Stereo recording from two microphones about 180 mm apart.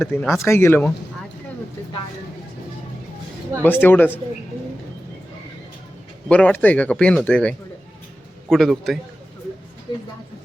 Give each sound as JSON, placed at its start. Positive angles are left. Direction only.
{"t": 0.1, "sound": "speech", "side_deg": 10}
{"t": 3.6, "sound": "speech", "side_deg": 10}
{"t": 6.2, "sound": "a man's voice", "side_deg": 5}
{"t": 9.9, "sound": "a woman's voice", "side_deg": 25}